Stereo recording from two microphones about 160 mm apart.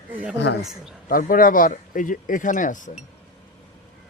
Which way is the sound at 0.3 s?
90° left.